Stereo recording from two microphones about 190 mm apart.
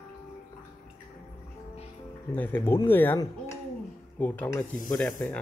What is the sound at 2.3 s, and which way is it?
Speech, 10° left (ahead or behind).